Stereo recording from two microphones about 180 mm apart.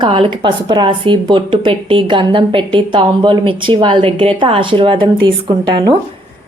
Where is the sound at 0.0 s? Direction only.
30° right (ahead or behind).